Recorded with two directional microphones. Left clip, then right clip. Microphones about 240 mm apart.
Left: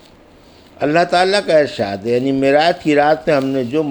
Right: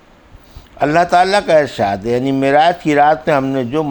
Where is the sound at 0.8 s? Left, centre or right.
Right.